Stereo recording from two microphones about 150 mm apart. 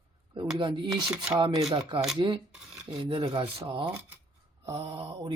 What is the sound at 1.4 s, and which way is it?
Speech, 25° right (ahead or behind).